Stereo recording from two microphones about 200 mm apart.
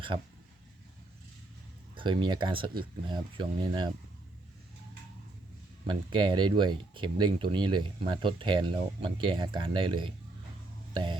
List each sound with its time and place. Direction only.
2.0 s speech: 25° right (ahead or behind)
5.8 s speech: 25° right (ahead or behind)